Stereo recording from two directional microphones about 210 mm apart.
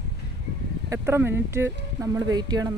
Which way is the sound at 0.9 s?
10° right (ahead or behind).